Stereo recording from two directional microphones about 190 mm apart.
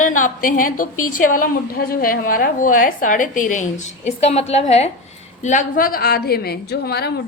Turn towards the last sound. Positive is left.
turn(degrees=55)  # may be behind; listen again after turning